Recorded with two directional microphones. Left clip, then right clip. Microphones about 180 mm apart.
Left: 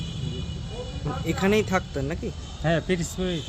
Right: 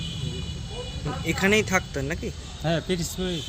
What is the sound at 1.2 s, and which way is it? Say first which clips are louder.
Speech: right 1 dB; 5° left (ahead or behind).